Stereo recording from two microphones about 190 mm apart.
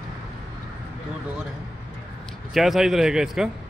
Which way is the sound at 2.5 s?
Centre (ahead or behind).